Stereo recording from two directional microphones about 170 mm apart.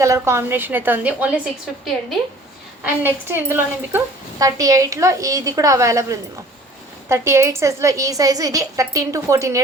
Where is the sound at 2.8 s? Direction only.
15° right (ahead or behind).